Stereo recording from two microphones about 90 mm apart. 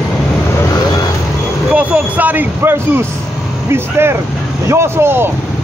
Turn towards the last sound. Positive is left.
turn(degrees=-25)  # may be behind; listen again after turning